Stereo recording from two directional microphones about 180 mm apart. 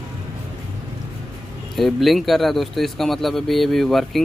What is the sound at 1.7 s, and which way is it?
Speech, centre (ahead or behind).